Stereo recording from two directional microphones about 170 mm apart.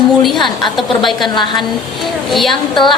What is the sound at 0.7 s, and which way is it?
Speech, centre (ahead or behind).